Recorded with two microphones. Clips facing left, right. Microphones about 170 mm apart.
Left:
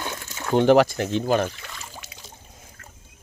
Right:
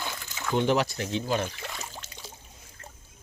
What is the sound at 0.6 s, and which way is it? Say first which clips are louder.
Speech: left 10 dB; 55° left (ahead or behind).